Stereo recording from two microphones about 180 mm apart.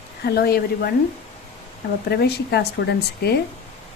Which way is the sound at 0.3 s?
60° left (ahead or behind).